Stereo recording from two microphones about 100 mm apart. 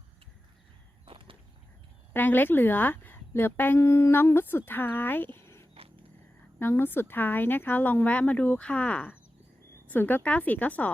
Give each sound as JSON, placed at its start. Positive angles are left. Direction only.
{"t": 1.0, "sound": "walk", "side_deg": -60}
{"t": 2.1, "sound": "speech", "side_deg": 20}